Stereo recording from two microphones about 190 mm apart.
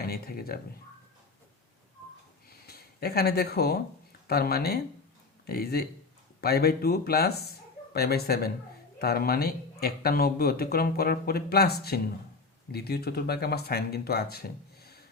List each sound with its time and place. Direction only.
0.0 s speech: 55° left (ahead or behind)
2.5 s a sound: 55° left (ahead or behind)
4.3 s speech: 55° left (ahead or behind)